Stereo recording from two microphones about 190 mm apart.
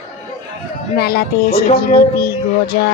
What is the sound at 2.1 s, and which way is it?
Child singing, 55° left (ahead or behind).